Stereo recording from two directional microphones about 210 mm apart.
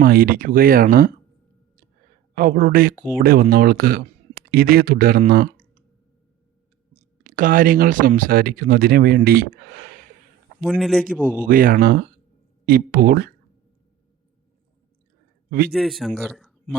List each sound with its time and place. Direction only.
0.0 s speech: 45° right (ahead or behind)
2.3 s speech: 40° right (ahead or behind)
6.9 s speech: 40° right (ahead or behind)
10.6 s speech: centre (ahead or behind)
11.4 s speech: 40° right (ahead or behind)
15.4 s a man's voice: 45° right (ahead or behind)
15.7 s speech: centre (ahead or behind)